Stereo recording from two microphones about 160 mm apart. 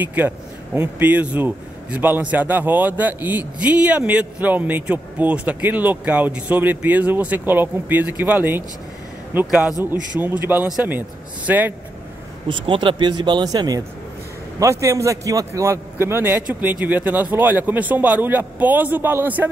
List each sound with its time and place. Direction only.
0.0 s a man's voice: 10° right (ahead or behind)
12.4 s speech: 30° right (ahead or behind); by 19.5 s 10° right (ahead or behind)